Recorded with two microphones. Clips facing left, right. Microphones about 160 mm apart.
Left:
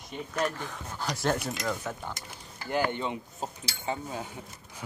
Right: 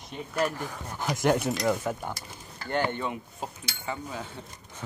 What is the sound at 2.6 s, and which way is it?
Speech, 5° left (ahead or behind).